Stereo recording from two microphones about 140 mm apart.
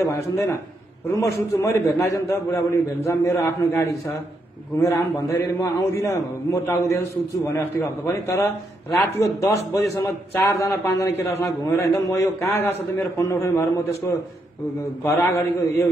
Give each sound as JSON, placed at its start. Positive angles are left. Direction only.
{"t": 0.1, "sound": "a man's voice", "side_deg": 20}
{"t": 15.0, "sound": "a man's voice", "side_deg": 20}